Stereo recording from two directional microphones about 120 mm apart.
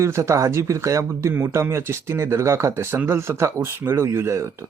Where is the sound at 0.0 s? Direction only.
25° right (ahead or behind).